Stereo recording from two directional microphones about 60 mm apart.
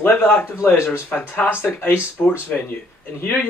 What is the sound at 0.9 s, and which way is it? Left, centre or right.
Speech, left.